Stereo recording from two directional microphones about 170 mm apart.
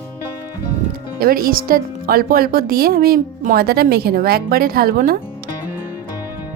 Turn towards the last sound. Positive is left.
turn(degrees=-60)  # may be behind; listen again after turning